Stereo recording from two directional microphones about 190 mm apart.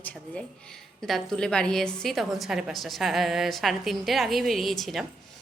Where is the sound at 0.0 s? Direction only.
5° left (ahead or behind).